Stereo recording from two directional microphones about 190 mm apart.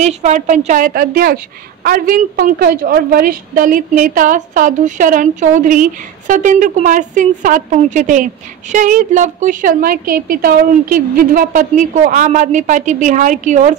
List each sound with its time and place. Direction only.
0.0 s a woman's voice: 40° right (ahead or behind)